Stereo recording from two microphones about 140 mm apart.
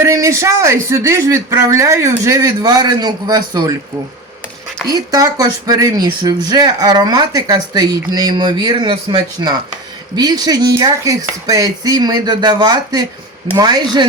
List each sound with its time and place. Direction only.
0.0 s speech: 20° right (ahead or behind)
4.9 s speech: 25° right (ahead or behind)